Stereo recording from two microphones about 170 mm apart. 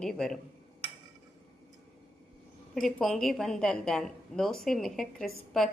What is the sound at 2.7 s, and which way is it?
A woman's voice, 5° left (ahead or behind).